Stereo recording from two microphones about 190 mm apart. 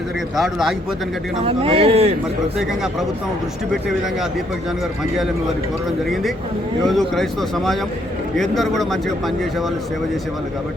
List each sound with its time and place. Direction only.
0.3 s speech: centre (ahead or behind)
1.5 s speech: 30° right (ahead or behind)
6.8 s speech: centre (ahead or behind)